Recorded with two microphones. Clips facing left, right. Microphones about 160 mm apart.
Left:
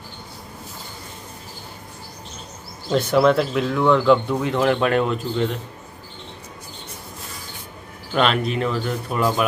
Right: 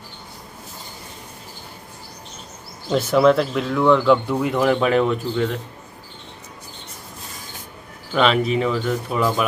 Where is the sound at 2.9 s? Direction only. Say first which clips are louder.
Right 1 dB; centre (ahead or behind).